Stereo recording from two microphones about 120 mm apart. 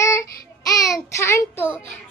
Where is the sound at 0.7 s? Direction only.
30° left (ahead or behind).